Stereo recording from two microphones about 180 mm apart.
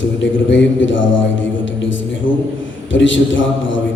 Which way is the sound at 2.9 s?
90° left.